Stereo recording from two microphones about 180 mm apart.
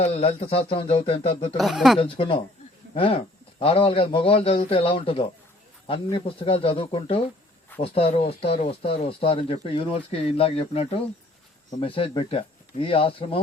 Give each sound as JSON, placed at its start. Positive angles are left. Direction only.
{"t": 0.0, "sound": "speech", "side_deg": 30}
{"t": 1.5, "sound": "speech", "side_deg": 0}
{"t": 2.0, "sound": "speech", "side_deg": 30}